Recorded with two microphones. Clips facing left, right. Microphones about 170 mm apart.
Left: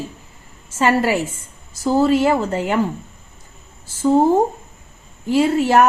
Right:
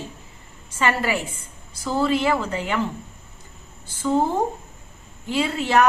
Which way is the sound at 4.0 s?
35° left (ahead or behind).